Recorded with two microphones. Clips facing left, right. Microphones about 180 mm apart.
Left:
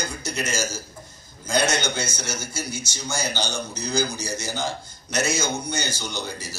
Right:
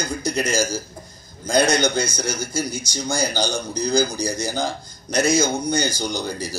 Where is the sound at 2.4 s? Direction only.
15° right (ahead or behind).